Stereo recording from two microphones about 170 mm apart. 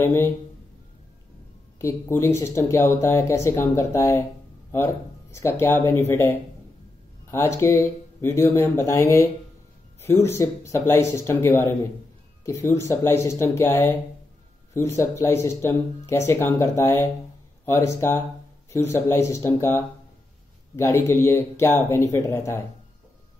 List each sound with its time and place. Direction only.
0.0 s speech: 15° left (ahead or behind)
1.8 s speech: 15° left (ahead or behind)
5.3 s speech: 15° left (ahead or behind)